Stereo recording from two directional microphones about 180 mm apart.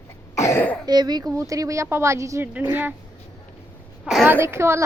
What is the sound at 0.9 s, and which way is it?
Speech, 20° right (ahead or behind).